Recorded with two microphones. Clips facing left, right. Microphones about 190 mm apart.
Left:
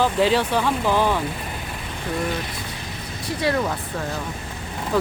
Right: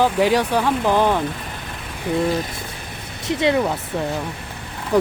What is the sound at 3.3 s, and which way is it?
Speech, 20° right (ahead or behind).